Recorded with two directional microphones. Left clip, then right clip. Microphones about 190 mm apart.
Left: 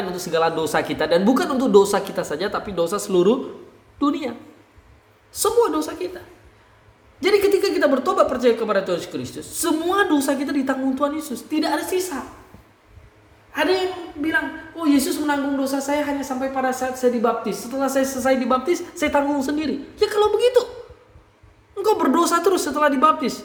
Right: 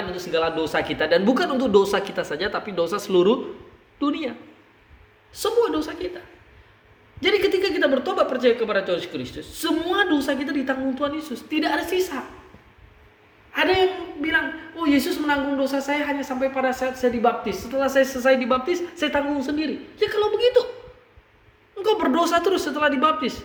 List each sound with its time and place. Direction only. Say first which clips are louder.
0.1 s a man's voice: left 3 dB; 35° left (ahead or behind); by 3.3 s 10° left (ahead or behind)
4.0 s speech: left 3 dB; 30° left (ahead or behind)
7.2 s speech: left 3 dB; 35° left (ahead or behind); by 12.2 s 15° left (ahead or behind)
13.5 s a man's voice: right 1 dB; 15° left (ahead or behind); by 20.7 s 35° left (ahead or behind)
21.8 s speech: left 2 dB; 30° left (ahead or behind)